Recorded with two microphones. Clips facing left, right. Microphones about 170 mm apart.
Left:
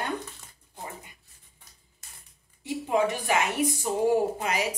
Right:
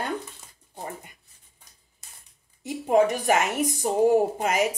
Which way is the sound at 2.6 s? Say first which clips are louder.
Right 5 dB; 45° right (ahead or behind).